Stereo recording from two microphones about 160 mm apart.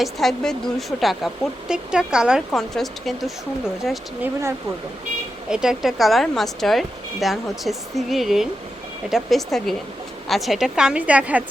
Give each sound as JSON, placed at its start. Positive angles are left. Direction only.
{"t": 0.0, "sound": "speech", "side_deg": 0}
{"t": 4.2, "sound": "speech", "side_deg": -20}
{"t": 5.5, "sound": "speech", "side_deg": -5}